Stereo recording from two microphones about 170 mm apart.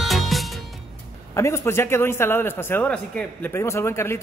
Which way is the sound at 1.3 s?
15° left (ahead or behind).